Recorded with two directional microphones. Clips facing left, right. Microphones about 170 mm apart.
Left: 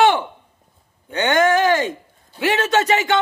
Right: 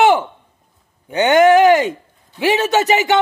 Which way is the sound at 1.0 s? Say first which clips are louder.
Right 6 dB; 15° right (ahead or behind).